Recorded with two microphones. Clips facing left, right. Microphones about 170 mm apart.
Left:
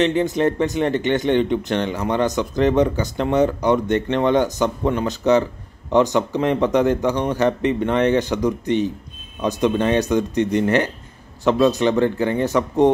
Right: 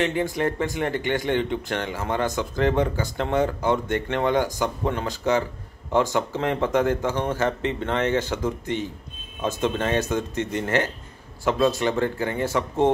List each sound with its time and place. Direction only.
0.0 s speech: 20° left (ahead or behind)